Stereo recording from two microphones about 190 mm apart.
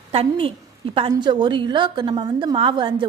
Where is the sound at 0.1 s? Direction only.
30° right (ahead or behind).